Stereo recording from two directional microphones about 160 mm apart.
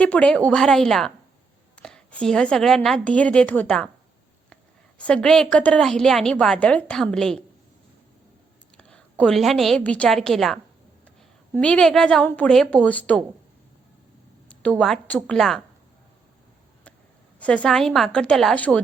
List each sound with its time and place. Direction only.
0.0 s a woman's voice: 10° left (ahead or behind)
4.9 s a woman's voice: 5° left (ahead or behind)
8.8 s a woman's voice: 5° left (ahead or behind)
14.5 s a woman's voice: 10° left (ahead or behind)
17.4 s a woman's voice: 5° left (ahead or behind)